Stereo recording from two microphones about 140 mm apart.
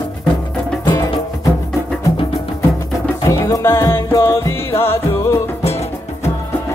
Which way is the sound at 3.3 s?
25° left (ahead or behind).